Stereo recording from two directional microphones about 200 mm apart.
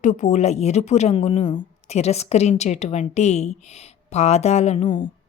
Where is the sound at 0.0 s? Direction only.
35° left (ahead or behind).